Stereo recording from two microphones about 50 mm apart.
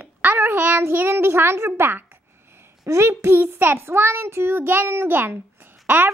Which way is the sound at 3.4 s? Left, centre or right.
Right.